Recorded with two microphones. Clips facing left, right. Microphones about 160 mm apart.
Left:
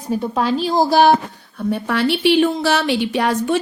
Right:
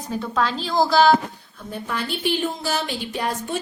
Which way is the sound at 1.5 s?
70° left (ahead or behind).